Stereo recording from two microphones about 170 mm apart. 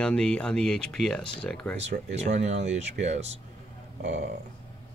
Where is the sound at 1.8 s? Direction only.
40° right (ahead or behind).